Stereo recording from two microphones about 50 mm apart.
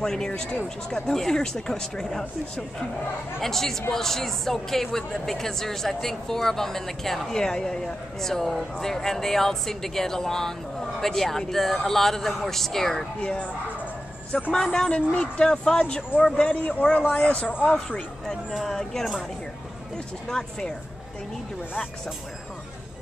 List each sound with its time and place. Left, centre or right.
0.0 s speech: centre
3.3 s speech: centre
14.5 s speech: centre
16.3 s speech: left
17.6 s speech: centre
18.5 s speech: centre
18.8 s speech: centre
20.2 s speech: centre